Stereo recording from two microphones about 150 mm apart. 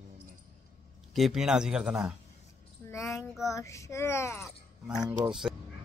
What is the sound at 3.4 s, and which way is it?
A child's voice, 20° left (ahead or behind).